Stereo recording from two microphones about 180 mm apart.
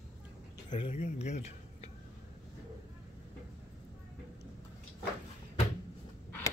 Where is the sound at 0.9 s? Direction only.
40° left (ahead or behind).